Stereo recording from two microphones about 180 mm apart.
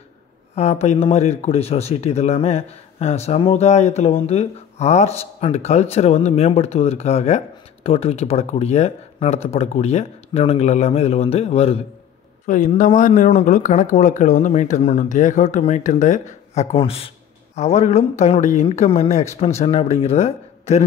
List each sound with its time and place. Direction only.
0.6 s speech: 35° left (ahead or behind)
12.4 s speech: 45° left (ahead or behind)
16.7 s speech: 30° left (ahead or behind)